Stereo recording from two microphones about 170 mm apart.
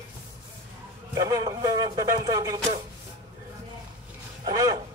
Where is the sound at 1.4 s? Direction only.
20° right (ahead or behind).